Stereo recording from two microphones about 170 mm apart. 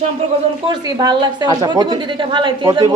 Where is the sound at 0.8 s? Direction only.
25° right (ahead or behind).